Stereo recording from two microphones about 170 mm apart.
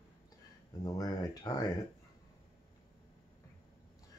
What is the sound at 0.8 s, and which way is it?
Speech, 20° left (ahead or behind).